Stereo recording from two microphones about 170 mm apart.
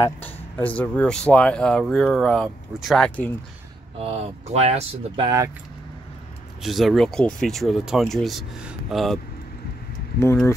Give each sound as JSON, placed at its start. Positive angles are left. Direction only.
{"t": 0.0, "sound": "speech", "side_deg": 10}
{"t": 4.0, "sound": "speech", "side_deg": -40}
{"t": 6.6, "sound": "speech", "side_deg": 0}